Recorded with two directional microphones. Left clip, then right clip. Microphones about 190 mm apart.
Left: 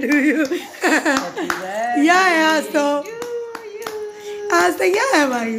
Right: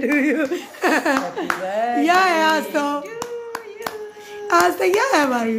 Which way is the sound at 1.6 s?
30° right (ahead or behind).